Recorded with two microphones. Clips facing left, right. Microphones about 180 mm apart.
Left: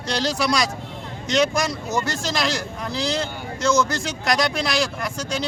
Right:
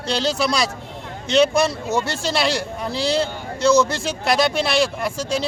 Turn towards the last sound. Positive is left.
turn(degrees=-30)  # may be behind; listen again after turning